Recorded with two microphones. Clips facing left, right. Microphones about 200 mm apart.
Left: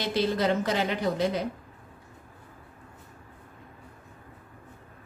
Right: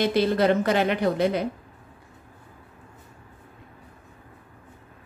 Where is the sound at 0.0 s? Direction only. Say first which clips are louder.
Right 5 dB; 55° right (ahead or behind).